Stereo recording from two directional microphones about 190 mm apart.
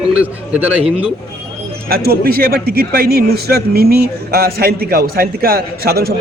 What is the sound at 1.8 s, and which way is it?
A man's voice, 55° right (ahead or behind).